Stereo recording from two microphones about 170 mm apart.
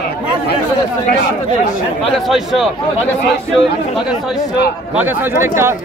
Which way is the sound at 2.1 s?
Centre (ahead or behind).